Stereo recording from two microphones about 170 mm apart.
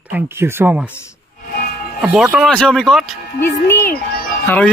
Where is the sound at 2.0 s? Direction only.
5° right (ahead or behind).